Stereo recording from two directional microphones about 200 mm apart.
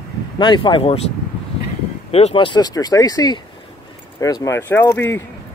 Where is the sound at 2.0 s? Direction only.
30° left (ahead or behind).